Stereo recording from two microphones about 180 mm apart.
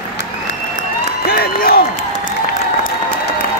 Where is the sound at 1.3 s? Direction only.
55° left (ahead or behind).